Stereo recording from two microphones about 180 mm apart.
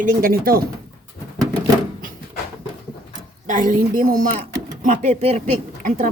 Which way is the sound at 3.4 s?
45° right (ahead or behind).